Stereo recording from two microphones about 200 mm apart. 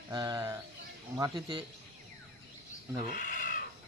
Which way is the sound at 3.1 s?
40° left (ahead or behind).